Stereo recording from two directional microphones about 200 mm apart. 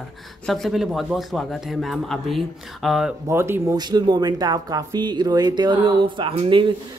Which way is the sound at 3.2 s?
10° right (ahead or behind).